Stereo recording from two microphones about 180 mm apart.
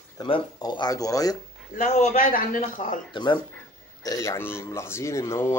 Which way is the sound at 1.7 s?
45° left (ahead or behind).